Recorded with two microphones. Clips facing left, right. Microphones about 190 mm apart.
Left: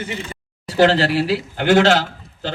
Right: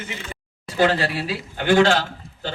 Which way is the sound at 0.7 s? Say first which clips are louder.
Left 5 dB; 75° left (ahead or behind).